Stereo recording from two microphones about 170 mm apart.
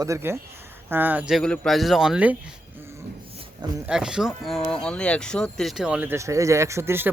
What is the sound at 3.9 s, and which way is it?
Speech, 5° right (ahead or behind).